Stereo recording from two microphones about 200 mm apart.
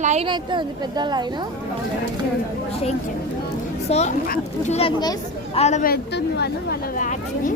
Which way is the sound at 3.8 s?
35° left (ahead or behind).